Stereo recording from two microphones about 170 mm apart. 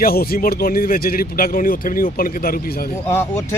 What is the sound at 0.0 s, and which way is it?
Speech, 60° left (ahead or behind).